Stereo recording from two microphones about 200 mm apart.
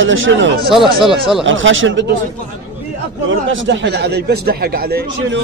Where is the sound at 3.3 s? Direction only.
70° right (ahead or behind); by 5.3 s 50° right (ahead or behind).